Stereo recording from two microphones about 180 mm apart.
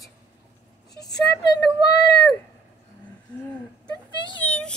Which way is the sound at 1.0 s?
20° left (ahead or behind).